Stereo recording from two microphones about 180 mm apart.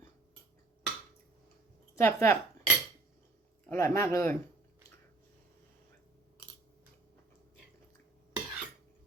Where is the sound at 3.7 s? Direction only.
15° left (ahead or behind).